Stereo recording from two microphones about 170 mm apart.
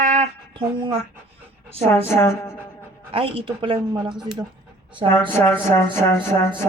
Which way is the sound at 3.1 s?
30° right (ahead or behind).